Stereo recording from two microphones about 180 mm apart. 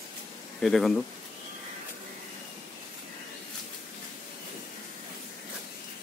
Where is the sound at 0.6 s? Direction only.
Centre (ahead or behind).